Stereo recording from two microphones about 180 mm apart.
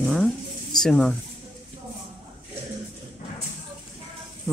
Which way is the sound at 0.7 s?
Centre (ahead or behind).